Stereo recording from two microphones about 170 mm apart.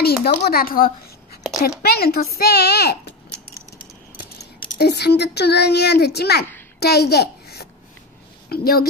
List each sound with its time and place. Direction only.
0.0 s speech: 65° left (ahead or behind)
4.7 s a child's voice: 75° left (ahead or behind)